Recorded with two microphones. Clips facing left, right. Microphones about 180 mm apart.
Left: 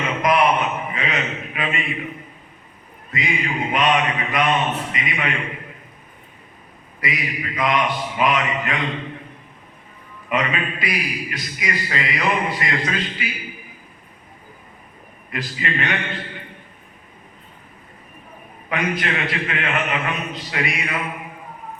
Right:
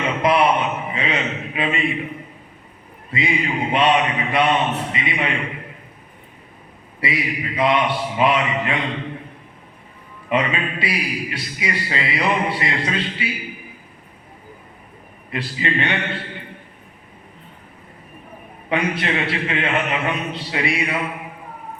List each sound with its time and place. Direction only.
0.2 s a sound: 30° right (ahead or behind)
3.1 s a man's voice: 30° right (ahead or behind)
7.0 s a man's voice: 30° right (ahead or behind)
10.2 s a man's voice: 30° right (ahead or behind)
15.3 s a man's voice: 30° right (ahead or behind)
18.7 s a man's voice: 30° right (ahead or behind)